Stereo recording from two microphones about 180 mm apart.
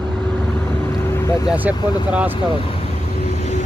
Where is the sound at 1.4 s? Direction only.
10° right (ahead or behind).